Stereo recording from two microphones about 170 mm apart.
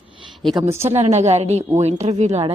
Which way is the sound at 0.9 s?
40° right (ahead or behind).